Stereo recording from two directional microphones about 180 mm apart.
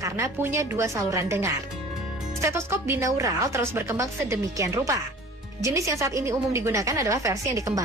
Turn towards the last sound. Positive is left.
turn(degrees=-15)  # may be behind; listen again after turning